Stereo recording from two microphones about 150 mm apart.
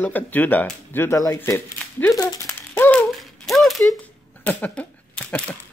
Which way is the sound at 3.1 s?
Centre (ahead or behind).